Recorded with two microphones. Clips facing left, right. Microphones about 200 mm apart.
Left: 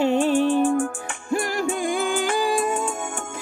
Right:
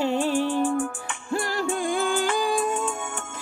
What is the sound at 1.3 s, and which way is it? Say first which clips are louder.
Music: left 2 dB; 15° left (ahead or behind).